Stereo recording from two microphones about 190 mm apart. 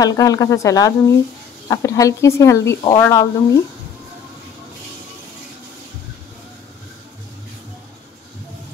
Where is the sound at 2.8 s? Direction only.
25° left (ahead or behind).